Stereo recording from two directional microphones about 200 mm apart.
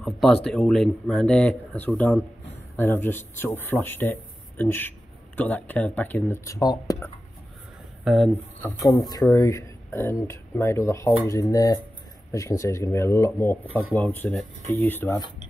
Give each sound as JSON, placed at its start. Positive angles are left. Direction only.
{"t": 0.0, "sound": "a man's voice", "side_deg": 5}
{"t": 8.0, "sound": "speech", "side_deg": 0}
{"t": 9.1, "sound": "speech", "side_deg": 15}